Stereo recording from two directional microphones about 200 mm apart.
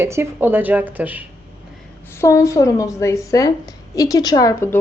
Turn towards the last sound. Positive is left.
turn(degrees=15)  # may be behind; listen again after turning